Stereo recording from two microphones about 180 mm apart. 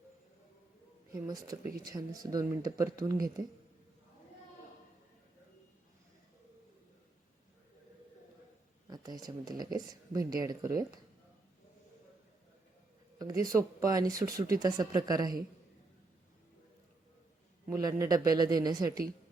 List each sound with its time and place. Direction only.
1.1 s speech: 20° right (ahead or behind)
8.9 s speech: 20° right (ahead or behind)
13.1 s speech: 20° right (ahead or behind)
17.7 s speech: 20° right (ahead or behind)